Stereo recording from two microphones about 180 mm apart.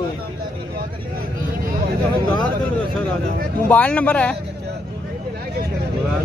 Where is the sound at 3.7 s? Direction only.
10° left (ahead or behind).